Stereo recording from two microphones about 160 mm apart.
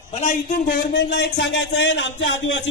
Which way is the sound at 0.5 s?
70° left (ahead or behind).